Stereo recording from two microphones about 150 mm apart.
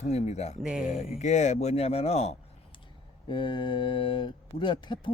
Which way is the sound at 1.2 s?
50° left (ahead or behind).